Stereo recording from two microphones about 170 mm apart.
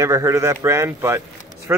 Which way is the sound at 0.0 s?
15° right (ahead or behind).